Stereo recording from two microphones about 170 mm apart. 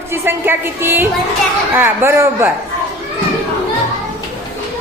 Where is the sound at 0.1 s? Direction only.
15° right (ahead or behind).